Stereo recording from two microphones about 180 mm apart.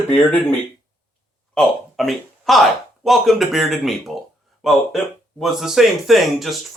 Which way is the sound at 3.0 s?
Centre (ahead or behind).